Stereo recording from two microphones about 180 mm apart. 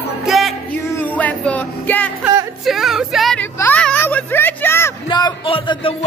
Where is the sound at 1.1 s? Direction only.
10° left (ahead or behind).